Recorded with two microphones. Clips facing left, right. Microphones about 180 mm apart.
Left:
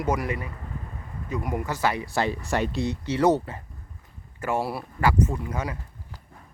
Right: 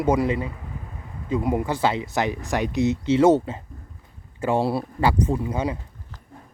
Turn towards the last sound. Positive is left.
turn(degrees=-25)  # may be behind; listen again after turning